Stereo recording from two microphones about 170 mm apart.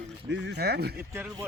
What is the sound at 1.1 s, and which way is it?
Speech, 15° right (ahead or behind).